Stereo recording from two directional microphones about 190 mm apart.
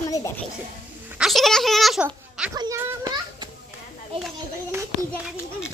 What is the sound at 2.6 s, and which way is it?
Children playing, 20° right (ahead or behind).